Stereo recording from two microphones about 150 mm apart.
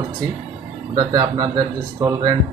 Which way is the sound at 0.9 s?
25° right (ahead or behind).